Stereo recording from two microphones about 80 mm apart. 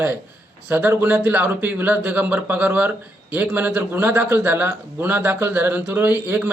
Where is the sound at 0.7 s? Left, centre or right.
Right.